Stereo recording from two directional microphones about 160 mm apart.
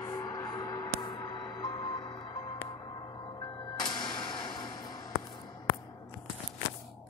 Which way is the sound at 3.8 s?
30° left (ahead or behind).